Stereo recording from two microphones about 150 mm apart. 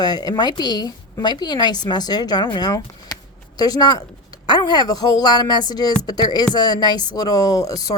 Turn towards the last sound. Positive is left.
turn(degrees=25)  # may be behind; listen again after turning